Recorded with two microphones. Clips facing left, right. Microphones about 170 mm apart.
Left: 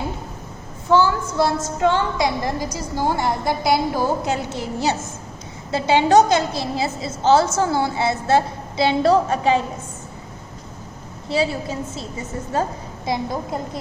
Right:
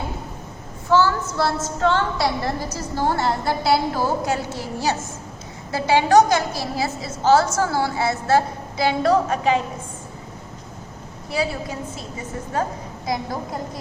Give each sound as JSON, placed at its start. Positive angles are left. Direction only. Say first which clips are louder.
{"t": 0.9, "sound": "a woman's voice", "louder": "left 1 dB", "side_deg": 15}
{"t": 11.3, "sound": "a woman's voice", "louder": "left 3 dB", "side_deg": 25}
{"t": 13.1, "sound": "a woman's voice", "louder": "left 2 dB", "side_deg": 25}